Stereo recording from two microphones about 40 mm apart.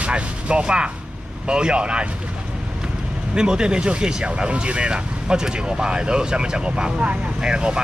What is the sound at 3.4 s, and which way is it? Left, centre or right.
A man's voice, right.